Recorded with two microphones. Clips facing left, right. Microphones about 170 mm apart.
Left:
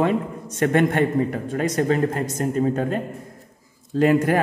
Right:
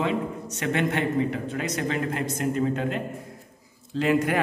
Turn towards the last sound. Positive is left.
turn(degrees=45)  # may be behind; listen again after turning